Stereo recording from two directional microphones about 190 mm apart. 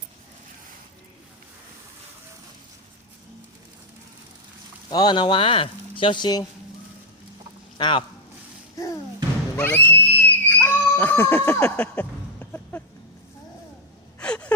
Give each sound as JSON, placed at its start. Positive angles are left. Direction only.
{"t": 4.9, "sound": "speech", "side_deg": 20}
{"t": 7.8, "sound": "speech", "side_deg": 25}
{"t": 8.7, "sound": "music", "side_deg": 20}
{"t": 9.6, "sound": "screaming", "side_deg": 10}
{"t": 14.2, "sound": "gasp", "side_deg": 5}